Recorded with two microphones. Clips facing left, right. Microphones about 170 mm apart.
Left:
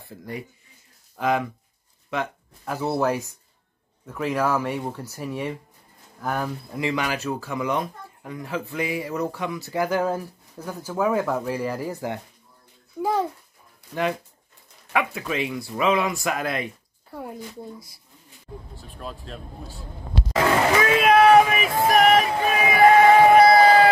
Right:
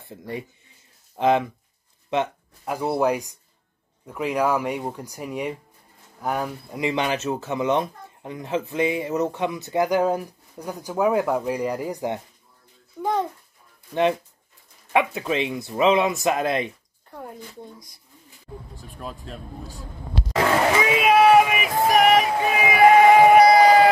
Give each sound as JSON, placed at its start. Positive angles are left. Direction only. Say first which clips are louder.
{"t": 0.0, "sound": "speech", "louder": "right 2 dB", "side_deg": -20}
{"t": 13.0, "sound": "speech", "louder": "left 1 dB", "side_deg": 5}
{"t": 14.9, "sound": "speech", "louder": "right 3 dB", "side_deg": -25}
{"t": 17.1, "sound": "speech", "louder": "left 3 dB", "side_deg": 5}
{"t": 18.9, "sound": "speech", "louder": "right 1 dB", "side_deg": -5}
{"t": 20.8, "sound": "a sound", "louder": "left 1 dB", "side_deg": -5}